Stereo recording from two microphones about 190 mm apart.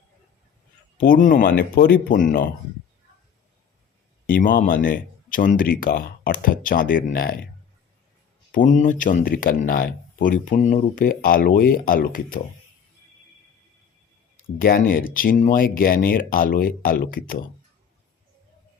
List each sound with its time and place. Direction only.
0.9 s speech: 45° left (ahead or behind)
4.3 s speech: 50° left (ahead or behind)
8.5 s speech: 45° left (ahead or behind)
14.6 s speech: 50° left (ahead or behind)